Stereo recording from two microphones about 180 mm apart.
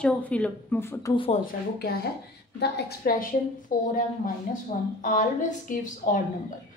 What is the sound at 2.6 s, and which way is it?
A woman's voice, 55° left (ahead or behind).